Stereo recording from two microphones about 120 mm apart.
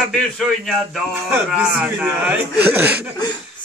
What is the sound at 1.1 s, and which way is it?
Speech, 15° right (ahead or behind).